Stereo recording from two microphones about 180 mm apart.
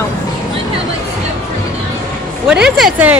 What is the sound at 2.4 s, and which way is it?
Speech, 5° right (ahead or behind).